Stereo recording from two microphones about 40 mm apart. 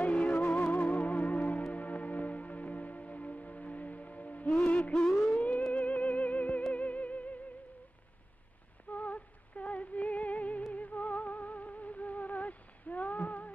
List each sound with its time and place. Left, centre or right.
0.0 s music: left
5.3 s theremin: left
5.7 s music: left
8.9 s music: left